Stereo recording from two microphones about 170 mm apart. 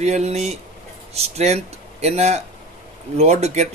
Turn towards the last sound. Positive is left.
turn(degrees=-40)  # may be behind; listen again after turning